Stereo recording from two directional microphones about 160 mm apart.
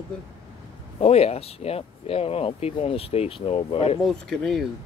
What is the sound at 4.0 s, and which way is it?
Speech, centre (ahead or behind).